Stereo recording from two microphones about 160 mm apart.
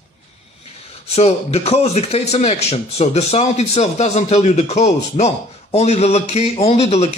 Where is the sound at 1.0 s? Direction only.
40° left (ahead or behind).